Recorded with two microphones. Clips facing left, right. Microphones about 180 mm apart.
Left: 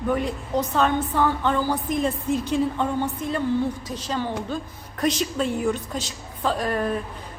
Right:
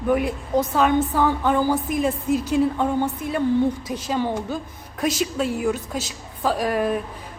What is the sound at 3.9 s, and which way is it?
A woman's voice, 10° right (ahead or behind).